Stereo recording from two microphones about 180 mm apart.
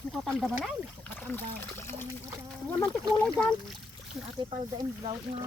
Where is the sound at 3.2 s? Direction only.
5° left (ahead or behind).